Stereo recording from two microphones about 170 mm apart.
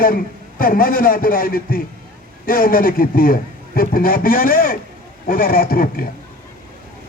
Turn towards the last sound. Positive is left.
turn(degrees=60)  # may be behind; listen again after turning